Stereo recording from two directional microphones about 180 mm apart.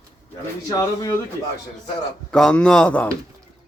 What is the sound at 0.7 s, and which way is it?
Speech, 20° left (ahead or behind).